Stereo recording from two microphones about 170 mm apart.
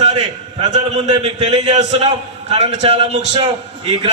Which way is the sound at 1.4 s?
40° right (ahead or behind).